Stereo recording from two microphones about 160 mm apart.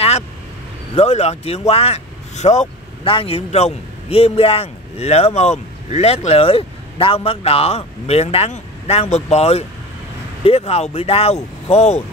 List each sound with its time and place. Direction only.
0.9 s speech: 40° left (ahead or behind)
3.0 s a man's voice: 35° left (ahead or behind)